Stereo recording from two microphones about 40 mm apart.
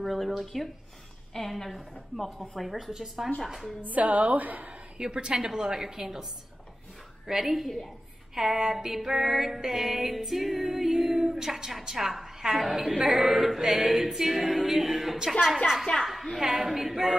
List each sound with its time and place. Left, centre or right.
0.0 s a woman's voice: centre
3.8 s a woman's voice: right
4.9 s music: right
7.2 s a woman's voice: centre
8.4 s music: centre
16.0 s a sound: centre
16.3 s music: centre